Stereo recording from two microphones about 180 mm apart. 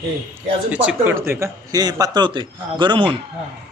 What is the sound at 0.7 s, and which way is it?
Speech, 10° right (ahead or behind).